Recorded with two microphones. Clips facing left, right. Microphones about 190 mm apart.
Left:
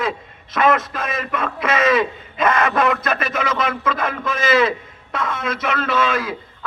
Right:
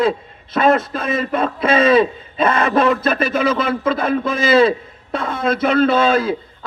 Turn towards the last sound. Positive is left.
turn(degrees=-30)  # may be behind; listen again after turning